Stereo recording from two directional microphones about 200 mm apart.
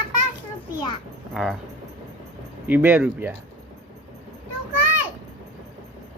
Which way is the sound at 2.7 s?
10° right (ahead or behind).